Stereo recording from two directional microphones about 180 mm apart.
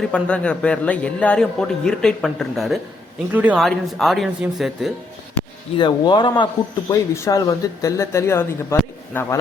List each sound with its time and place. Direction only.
0.0 s a man's voice: 5° left (ahead or behind)
5.7 s speech: 25° left (ahead or behind)